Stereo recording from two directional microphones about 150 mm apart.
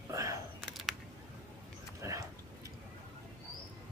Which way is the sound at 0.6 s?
Centre (ahead or behind).